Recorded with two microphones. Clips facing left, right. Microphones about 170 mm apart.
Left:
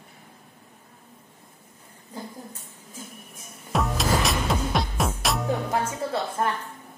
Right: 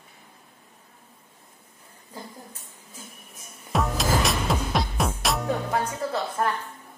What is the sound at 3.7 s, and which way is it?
Music, centre (ahead or behind).